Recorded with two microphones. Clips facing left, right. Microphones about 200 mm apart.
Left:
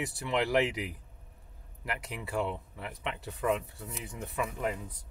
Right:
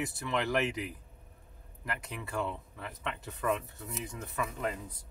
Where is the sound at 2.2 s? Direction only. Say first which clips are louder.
Left 3 dB; 15° left (ahead or behind).